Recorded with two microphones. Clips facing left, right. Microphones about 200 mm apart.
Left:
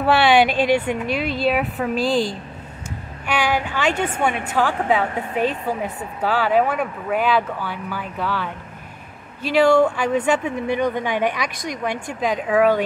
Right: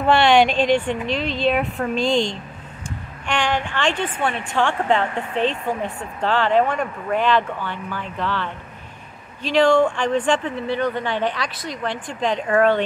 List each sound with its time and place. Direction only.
0.0 s speech: 5° left (ahead or behind)